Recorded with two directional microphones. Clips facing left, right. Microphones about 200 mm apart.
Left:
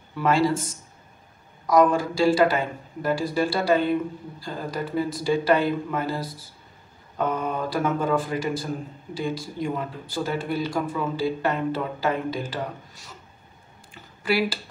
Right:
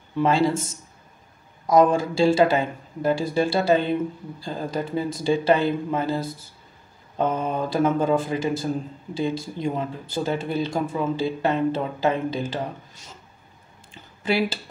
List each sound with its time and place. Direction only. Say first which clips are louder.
0.2 s speech: right 1 dB; 25° right (ahead or behind)
1.7 s speech: right 1 dB; 25° right (ahead or behind)
14.2 s speech: right 1 dB; 25° right (ahead or behind)